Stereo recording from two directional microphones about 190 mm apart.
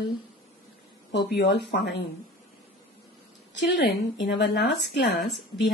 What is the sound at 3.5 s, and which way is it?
A woman's voice, 70° left (ahead or behind).